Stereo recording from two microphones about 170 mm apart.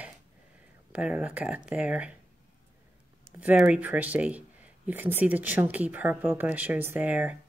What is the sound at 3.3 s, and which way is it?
Speech, 10° right (ahead or behind).